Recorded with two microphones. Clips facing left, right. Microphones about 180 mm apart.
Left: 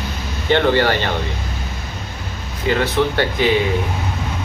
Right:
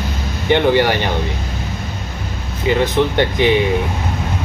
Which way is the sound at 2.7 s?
20° right (ahead or behind).